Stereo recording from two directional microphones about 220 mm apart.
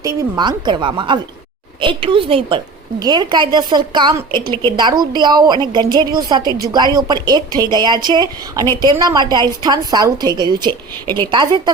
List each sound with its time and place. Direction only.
0.0 s a woman's voice: 15° right (ahead or behind)
11.0 s a woman's voice: 10° left (ahead or behind)
11.3 s a woman's voice: 20° right (ahead or behind)